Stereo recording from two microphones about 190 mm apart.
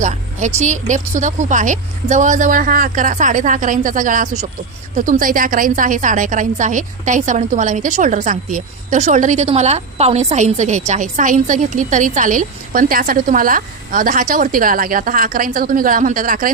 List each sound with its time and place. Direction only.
0.0 s a woman's voice: 40° right (ahead or behind)